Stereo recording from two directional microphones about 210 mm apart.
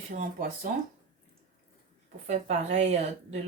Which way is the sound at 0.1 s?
40° right (ahead or behind).